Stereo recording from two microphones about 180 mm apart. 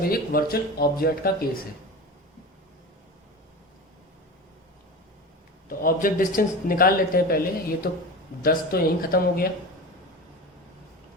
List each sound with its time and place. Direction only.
0.0 s speech: 55° left (ahead or behind)
5.6 s speech: 50° left (ahead or behind)